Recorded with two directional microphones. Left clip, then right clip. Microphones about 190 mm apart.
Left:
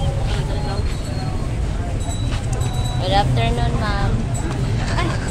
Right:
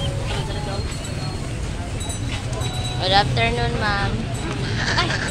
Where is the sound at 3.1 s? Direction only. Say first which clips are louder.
Right 1 dB; 25° right (ahead or behind).